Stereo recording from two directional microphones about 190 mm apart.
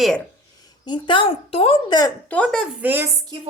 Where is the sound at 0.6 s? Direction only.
25° left (ahead or behind).